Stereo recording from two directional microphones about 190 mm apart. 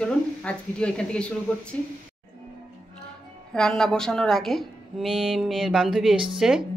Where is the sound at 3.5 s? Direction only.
5° left (ahead or behind).